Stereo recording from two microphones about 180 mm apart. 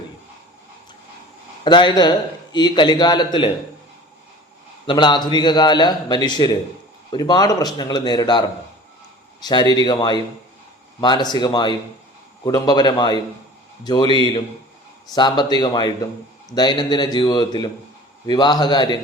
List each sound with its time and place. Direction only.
1.6 s a man's voice: 25° left (ahead or behind)
4.9 s a man's voice: 25° left (ahead or behind)